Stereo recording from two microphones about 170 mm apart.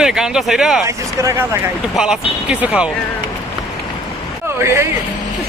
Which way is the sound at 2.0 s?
5° right (ahead or behind).